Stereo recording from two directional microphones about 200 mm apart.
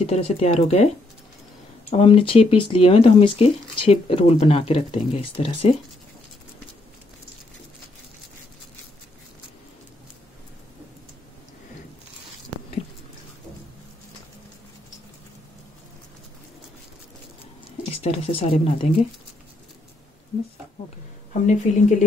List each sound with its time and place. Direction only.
0.0 s speech: 30° left (ahead or behind)
1.9 s speech: 25° left (ahead or behind)
18.0 s speech: 30° left (ahead or behind)
21.3 s speech: 35° left (ahead or behind)